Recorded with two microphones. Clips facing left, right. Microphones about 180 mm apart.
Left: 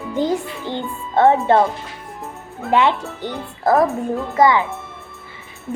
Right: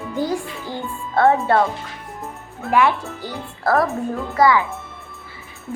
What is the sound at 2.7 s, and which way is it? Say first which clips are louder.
A woman's voice: left 1 dB; 20° left (ahead or behind).